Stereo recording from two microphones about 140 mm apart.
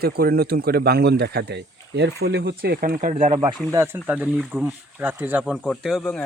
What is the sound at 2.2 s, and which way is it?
Speech, 90° right.